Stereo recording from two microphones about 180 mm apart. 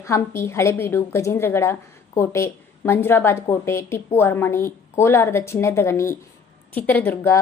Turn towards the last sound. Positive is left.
turn(degrees=10)  # may be behind; listen again after turning